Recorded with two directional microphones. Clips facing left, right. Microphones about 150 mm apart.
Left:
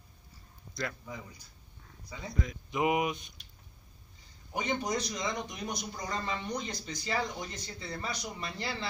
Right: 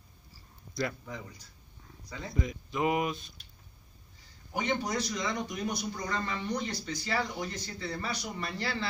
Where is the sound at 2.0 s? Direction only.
10° left (ahead or behind).